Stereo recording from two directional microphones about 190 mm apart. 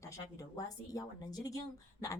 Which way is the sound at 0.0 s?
15° left (ahead or behind).